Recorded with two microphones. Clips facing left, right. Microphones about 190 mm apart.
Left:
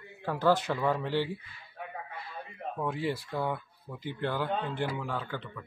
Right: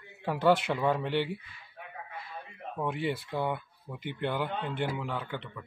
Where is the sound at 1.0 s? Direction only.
20° right (ahead or behind).